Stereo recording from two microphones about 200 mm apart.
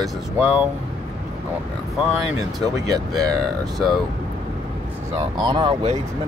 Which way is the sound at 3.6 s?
Centre (ahead or behind).